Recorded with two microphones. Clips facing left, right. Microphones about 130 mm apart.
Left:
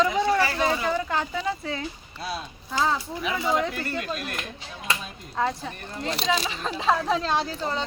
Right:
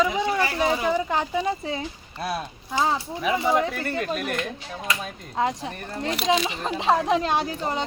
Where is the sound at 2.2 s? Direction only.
55° right (ahead or behind).